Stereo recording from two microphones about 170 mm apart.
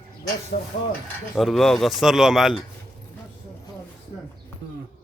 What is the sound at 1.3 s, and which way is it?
A man's voice, centre (ahead or behind).